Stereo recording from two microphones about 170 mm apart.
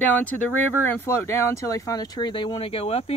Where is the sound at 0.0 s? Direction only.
10° left (ahead or behind).